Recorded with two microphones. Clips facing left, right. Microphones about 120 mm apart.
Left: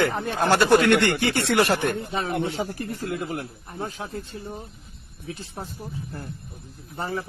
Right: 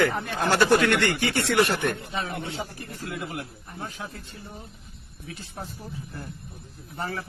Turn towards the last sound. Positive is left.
turn(degrees=25)  # may be behind; listen again after turning